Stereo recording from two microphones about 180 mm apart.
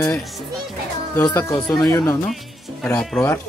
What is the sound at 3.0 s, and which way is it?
Music, 5° left (ahead or behind).